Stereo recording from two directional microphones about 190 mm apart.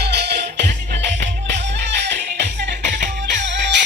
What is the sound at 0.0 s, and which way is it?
Music, 60° right (ahead or behind).